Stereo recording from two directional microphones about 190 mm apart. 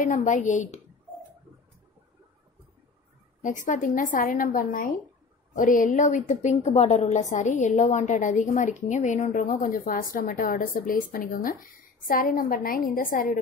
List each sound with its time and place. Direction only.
0.0 s a woman's voice: 40° left (ahead or behind)
3.4 s a woman's voice: 40° left (ahead or behind)